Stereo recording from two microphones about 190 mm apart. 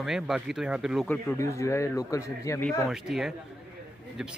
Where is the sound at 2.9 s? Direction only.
Centre (ahead or behind).